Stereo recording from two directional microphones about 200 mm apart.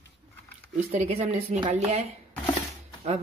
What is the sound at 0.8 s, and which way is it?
Speech, 30° right (ahead or behind).